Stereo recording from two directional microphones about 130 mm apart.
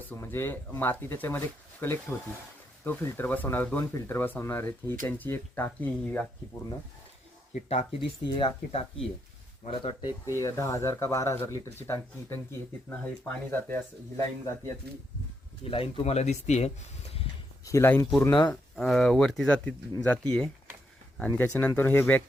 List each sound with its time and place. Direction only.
0.1 s speech: 15° left (ahead or behind)
8.0 s speech: 40° left (ahead or behind)
10.3 s speech: 25° left (ahead or behind)
15.7 s speech: 50° left (ahead or behind)
17.7 s speech: 20° left (ahead or behind)
18.4 s speech: 5° left (ahead or behind)